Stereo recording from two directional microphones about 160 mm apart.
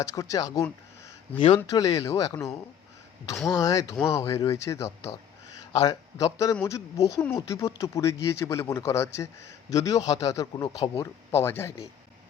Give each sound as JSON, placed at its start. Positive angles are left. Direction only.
{"t": 0.0, "sound": "speech", "side_deg": 20}